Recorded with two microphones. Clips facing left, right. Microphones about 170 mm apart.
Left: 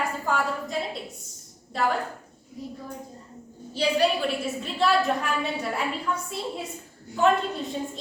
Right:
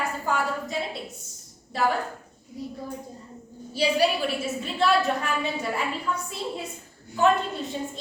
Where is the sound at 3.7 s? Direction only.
10° right (ahead or behind).